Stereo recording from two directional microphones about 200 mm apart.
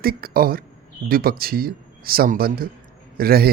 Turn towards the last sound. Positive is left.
turn(degrees=-50)  # may be behind; listen again after turning